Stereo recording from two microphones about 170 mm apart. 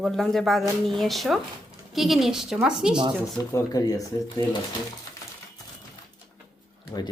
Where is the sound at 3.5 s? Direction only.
20° left (ahead or behind).